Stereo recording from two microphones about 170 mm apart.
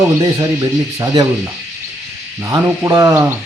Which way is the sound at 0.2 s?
20° right (ahead or behind).